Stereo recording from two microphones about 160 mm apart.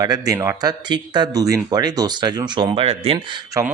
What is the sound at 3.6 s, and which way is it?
Speech, 20° right (ahead or behind).